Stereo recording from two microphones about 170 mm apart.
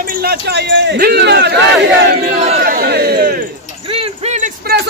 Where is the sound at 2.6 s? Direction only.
65° right (ahead or behind).